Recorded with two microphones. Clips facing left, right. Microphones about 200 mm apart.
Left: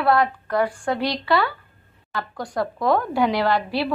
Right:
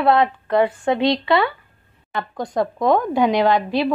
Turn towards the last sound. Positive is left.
turn(degrees=-20)  # may be behind; listen again after turning